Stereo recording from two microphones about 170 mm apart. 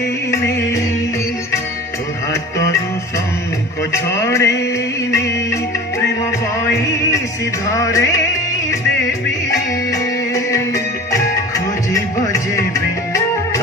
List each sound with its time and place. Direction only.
0.3 s music: 15° left (ahead or behind)
3.9 s music: 15° left (ahead or behind)
7.7 s music: 20° left (ahead or behind)
10.3 s music: 20° left (ahead or behind)